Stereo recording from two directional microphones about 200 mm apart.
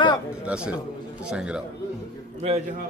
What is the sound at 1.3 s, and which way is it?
Speech, 5° right (ahead or behind).